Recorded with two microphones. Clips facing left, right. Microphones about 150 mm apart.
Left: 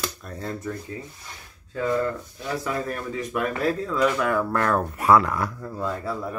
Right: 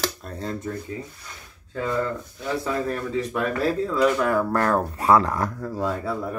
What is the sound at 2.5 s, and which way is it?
Speech, 30° right (ahead or behind).